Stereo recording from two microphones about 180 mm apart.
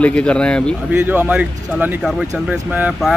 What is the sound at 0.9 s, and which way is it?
A man's voice, 10° right (ahead or behind).